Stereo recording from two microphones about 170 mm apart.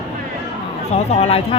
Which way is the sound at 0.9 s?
35° left (ahead or behind).